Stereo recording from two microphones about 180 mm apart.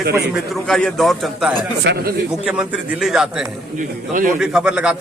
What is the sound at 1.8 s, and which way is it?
Speech, 75° right (ahead or behind).